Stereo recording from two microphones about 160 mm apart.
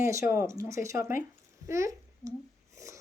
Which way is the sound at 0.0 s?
15° right (ahead or behind).